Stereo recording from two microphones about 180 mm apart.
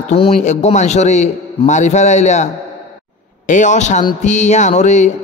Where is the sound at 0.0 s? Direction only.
40° left (ahead or behind).